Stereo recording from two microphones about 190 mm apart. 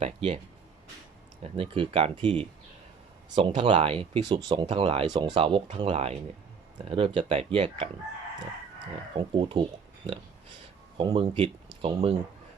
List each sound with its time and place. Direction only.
0.0 s speech: 30° right (ahead or behind)
1.4 s speech: 30° right (ahead or behind)
9.1 s speech: 25° right (ahead or behind)
10.9 s speech: 30° right (ahead or behind)